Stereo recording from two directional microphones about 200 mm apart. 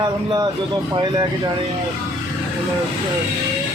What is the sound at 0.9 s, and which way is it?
Speech, 20° right (ahead or behind).